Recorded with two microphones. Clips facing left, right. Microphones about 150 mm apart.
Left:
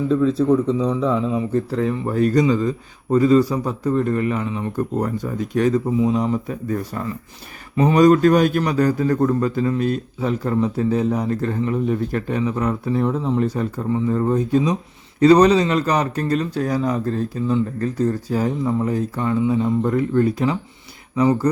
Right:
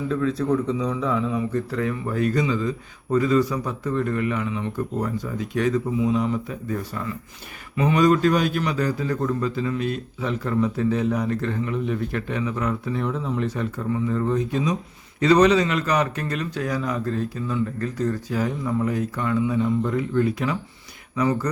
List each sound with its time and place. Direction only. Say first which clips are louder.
0.8 s a man's voice: left 4 dB; 25° left (ahead or behind)
19.8 s speech: left 4 dB; 45° left (ahead or behind)
21.2 s speech: left 6 dB; 30° left (ahead or behind)